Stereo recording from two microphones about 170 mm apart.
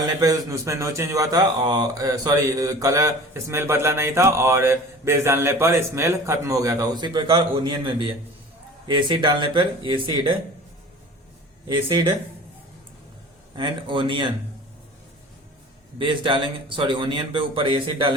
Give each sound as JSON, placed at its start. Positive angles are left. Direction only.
{"t": 0.2, "sound": "speech", "side_deg": -20}
{"t": 11.7, "sound": "speech", "side_deg": -25}
{"t": 13.6, "sound": "speech", "side_deg": -30}
{"t": 16.0, "sound": "speech", "side_deg": -30}